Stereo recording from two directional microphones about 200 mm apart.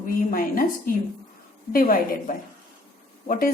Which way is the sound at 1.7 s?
45° left (ahead or behind).